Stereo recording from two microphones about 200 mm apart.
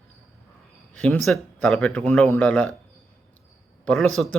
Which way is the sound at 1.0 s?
5° left (ahead or behind).